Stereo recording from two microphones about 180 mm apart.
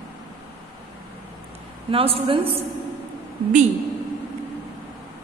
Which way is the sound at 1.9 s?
30° right (ahead or behind).